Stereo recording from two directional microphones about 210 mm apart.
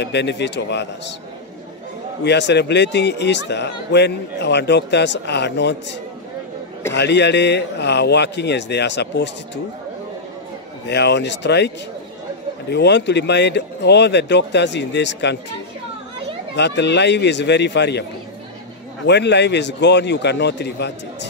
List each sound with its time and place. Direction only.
0.0 s a man's voice: 55° left (ahead or behind)
2.2 s a man's voice: 55° left (ahead or behind)
10.9 s a man's voice: 55° left (ahead or behind)
16.5 s a man's voice: 55° left (ahead or behind)
19.0 s a man's voice: 55° left (ahead or behind)